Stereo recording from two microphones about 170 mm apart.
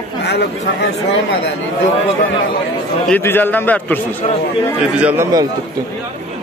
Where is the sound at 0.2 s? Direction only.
75° left (ahead or behind).